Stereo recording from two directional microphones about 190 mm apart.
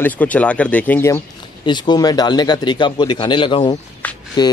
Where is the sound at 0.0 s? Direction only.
10° left (ahead or behind).